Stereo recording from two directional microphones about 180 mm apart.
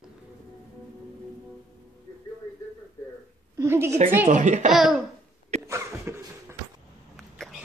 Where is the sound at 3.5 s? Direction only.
15° right (ahead or behind).